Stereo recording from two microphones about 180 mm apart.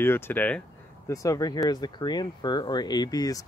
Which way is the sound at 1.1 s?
20° left (ahead or behind).